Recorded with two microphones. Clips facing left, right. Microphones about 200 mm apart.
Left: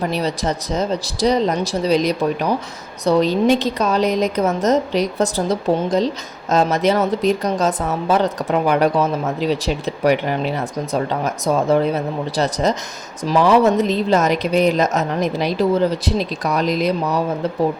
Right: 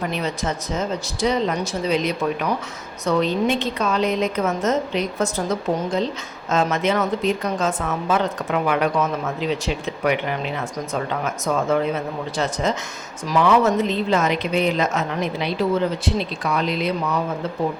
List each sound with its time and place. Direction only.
0.1 s speech: 35° left (ahead or behind)